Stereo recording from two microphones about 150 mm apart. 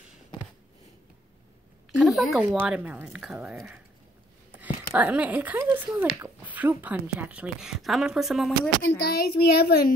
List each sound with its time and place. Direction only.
2.0 s a sound: centre (ahead or behind)
2.4 s speech: 10° right (ahead or behind)
4.9 s speech: 10° right (ahead or behind)
8.9 s a child's voice: 90° left